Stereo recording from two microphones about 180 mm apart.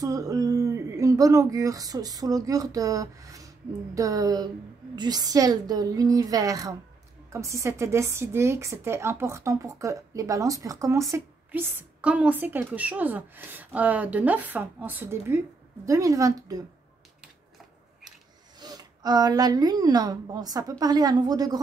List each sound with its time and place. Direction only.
0.0 s a woman's voice: 20° right (ahead or behind)
18.6 s speech: 20° right (ahead or behind)